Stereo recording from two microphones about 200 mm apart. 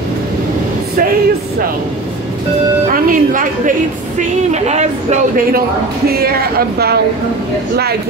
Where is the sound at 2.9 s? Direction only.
40° right (ahead or behind).